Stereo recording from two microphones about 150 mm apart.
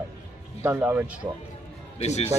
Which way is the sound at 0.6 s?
15° right (ahead or behind).